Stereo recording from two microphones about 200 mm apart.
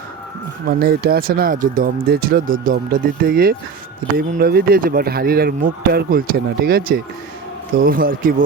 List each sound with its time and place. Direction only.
0.8 s speech: 50° right (ahead or behind)